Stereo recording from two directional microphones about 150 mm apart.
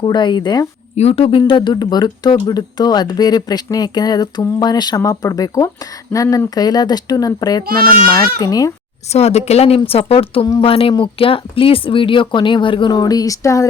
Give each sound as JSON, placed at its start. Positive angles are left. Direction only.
{"t": 0.0, "sound": "speech", "side_deg": 30}
{"t": 0.9, "sound": "speech", "side_deg": 40}
{"t": 7.7, "sound": "a child's voice", "side_deg": -80}
{"t": 8.4, "sound": "speech", "side_deg": 25}
{"t": 9.1, "sound": "speech", "side_deg": 45}